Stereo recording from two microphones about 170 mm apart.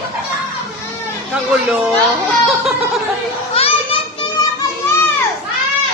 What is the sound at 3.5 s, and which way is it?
Children playing, 35° left (ahead or behind).